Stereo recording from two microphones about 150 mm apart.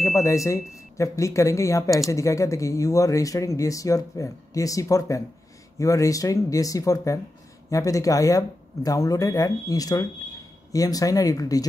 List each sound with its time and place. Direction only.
0.1 s speech: 20° left (ahead or behind)